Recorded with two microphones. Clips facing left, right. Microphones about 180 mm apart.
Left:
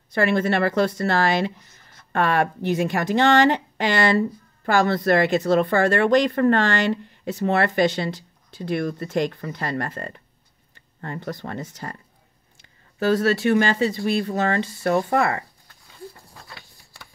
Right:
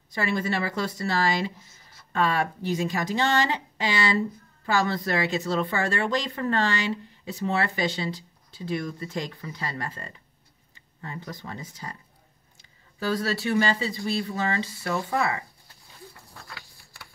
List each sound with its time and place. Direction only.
0.1 s speech: 70° left (ahead or behind)
13.2 s speech: 55° left (ahead or behind)
14.8 s speech: 50° left (ahead or behind)